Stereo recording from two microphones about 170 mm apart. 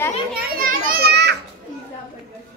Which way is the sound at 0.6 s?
55° right (ahead or behind).